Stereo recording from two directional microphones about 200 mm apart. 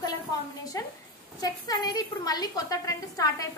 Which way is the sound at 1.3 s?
20° left (ahead or behind).